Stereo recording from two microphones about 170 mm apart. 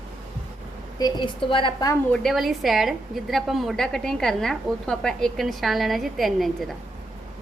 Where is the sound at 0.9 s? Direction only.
25° left (ahead or behind).